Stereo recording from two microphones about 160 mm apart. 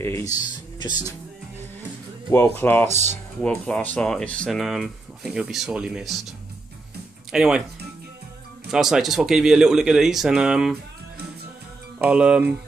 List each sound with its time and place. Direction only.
0.0 s speech: 20° left (ahead or behind)
2.3 s speech: 15° left (ahead or behind)
2.9 s speech: 45° right (ahead or behind)
3.4 s speech: 5° left (ahead or behind)
7.3 s speech: 5° right (ahead or behind)
8.6 s speech: 5° right (ahead or behind)
12.0 s speech: 5° right (ahead or behind)